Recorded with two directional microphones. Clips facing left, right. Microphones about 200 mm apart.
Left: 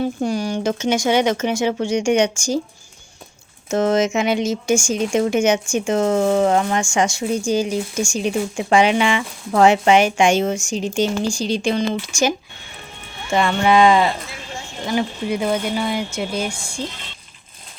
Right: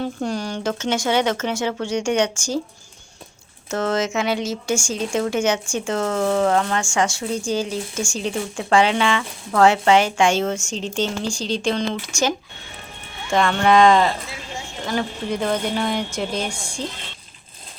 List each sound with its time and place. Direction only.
0.0 s speech: 10° left (ahead or behind)
3.7 s speech: 20° left (ahead or behind)
13.3 s speech: 5° left (ahead or behind)